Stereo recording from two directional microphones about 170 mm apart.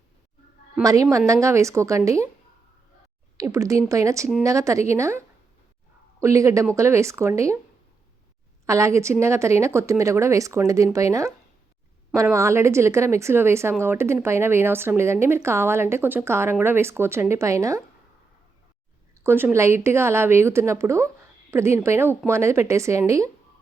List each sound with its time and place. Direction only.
0.8 s a woman's voice: 20° right (ahead or behind)
3.3 s a woman's voice: 20° right (ahead or behind)
6.2 s a woman's voice: 20° right (ahead or behind)
8.6 s a woman's voice: 15° right (ahead or behind)
19.2 s a woman's voice: 15° right (ahead or behind)